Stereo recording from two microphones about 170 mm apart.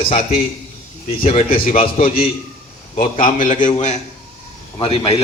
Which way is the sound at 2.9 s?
50° left (ahead or behind).